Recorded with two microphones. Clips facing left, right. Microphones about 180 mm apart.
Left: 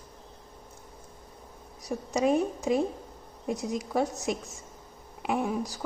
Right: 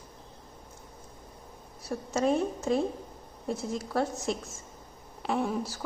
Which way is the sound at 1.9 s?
15° left (ahead or behind).